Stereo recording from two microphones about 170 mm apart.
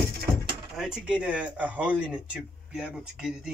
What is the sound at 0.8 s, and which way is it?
Speech, 5° right (ahead or behind).